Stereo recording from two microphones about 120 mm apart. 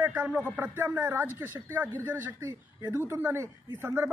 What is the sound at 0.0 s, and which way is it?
Speech, 20° right (ahead or behind).